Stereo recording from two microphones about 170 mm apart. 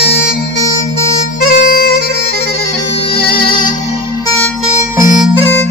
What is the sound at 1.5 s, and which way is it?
Music, 60° left (ahead or behind).